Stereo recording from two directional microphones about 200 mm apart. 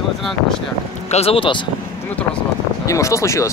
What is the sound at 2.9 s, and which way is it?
Speech, 15° left (ahead or behind).